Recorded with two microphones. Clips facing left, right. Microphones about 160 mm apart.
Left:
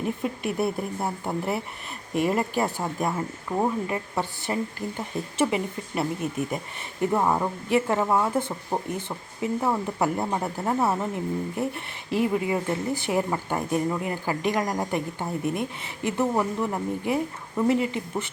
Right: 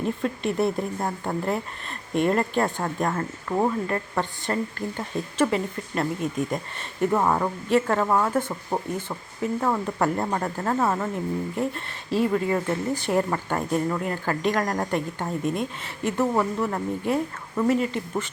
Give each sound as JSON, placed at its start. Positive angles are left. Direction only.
{"t": 0.0, "sound": "a woman's voice", "side_deg": 15}